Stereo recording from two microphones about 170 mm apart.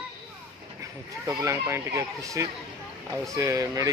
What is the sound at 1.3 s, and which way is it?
Speech, 15° right (ahead or behind).